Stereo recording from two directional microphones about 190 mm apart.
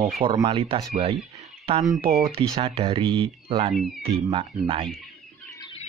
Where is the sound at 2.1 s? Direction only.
30° right (ahead or behind).